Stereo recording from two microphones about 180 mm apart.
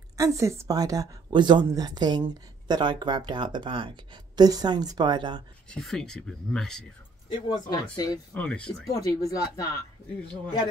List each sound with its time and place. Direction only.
0.2 s speech: 15° right (ahead or behind)
5.7 s speech: centre (ahead or behind)
7.2 s speech: 25° left (ahead or behind)
8.4 s speech: 5° left (ahead or behind)
8.8 s speech: 20° left (ahead or behind)